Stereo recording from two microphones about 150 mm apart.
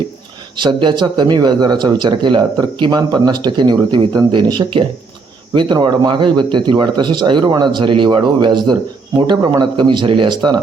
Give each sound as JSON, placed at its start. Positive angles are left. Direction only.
{"t": 0.5, "sound": "speech", "side_deg": -30}